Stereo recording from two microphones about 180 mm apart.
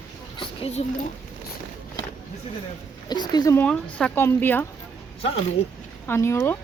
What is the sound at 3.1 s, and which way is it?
Speech, 25° left (ahead or behind).